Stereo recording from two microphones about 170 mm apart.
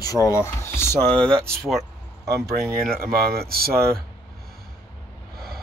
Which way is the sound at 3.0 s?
65° right (ahead or behind).